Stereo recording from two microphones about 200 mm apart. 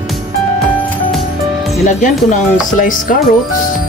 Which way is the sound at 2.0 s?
40° left (ahead or behind).